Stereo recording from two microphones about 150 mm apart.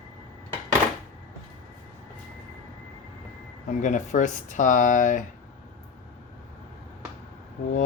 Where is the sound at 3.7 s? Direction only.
55° left (ahead or behind).